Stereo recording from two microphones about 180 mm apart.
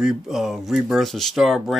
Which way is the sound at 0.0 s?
5° right (ahead or behind).